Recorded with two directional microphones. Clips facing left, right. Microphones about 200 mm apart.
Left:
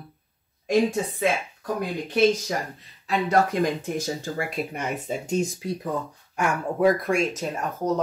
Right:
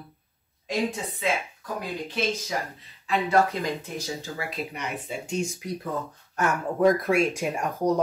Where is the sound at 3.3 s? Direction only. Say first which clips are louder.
Left 2 dB; 50° left (ahead or behind).